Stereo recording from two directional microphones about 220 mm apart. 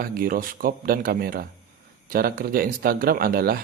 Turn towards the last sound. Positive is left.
turn(degrees=-45)  # may be behind; listen again after turning